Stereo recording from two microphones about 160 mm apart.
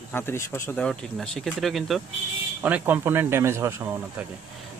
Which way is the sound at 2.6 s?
10° right (ahead or behind).